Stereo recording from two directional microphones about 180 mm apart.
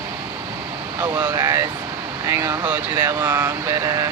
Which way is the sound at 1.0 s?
20° right (ahead or behind).